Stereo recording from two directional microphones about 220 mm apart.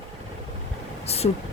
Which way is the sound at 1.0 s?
30° left (ahead or behind).